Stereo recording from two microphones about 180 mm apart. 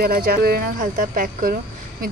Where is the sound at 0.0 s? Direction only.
55° right (ahead or behind).